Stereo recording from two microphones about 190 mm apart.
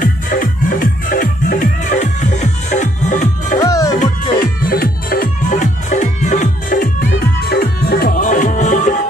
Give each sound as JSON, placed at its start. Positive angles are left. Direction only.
{"t": 0.0, "sound": "music", "side_deg": 45}
{"t": 3.6, "sound": "music", "side_deg": 20}
{"t": 4.6, "sound": "music", "side_deg": 50}
{"t": 7.0, "sound": "music", "side_deg": 60}